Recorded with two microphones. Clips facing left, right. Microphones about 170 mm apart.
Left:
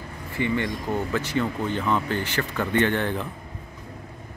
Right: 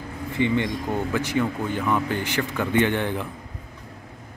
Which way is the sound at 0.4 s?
15° right (ahead or behind).